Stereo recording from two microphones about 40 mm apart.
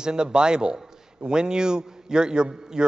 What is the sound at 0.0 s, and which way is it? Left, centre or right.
A man's voice, right.